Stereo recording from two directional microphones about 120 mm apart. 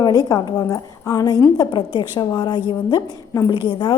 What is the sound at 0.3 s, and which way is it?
A woman's voice, 30° left (ahead or behind).